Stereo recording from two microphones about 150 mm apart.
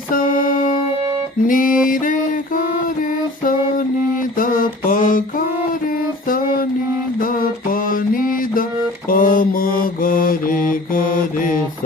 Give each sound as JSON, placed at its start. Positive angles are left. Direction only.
{"t": 0.1, "sound": "music", "side_deg": 70}
{"t": 1.5, "sound": "mantra", "side_deg": 65}
{"t": 4.4, "sound": "mantra", "side_deg": 65}
{"t": 7.2, "sound": "mantra", "side_deg": 70}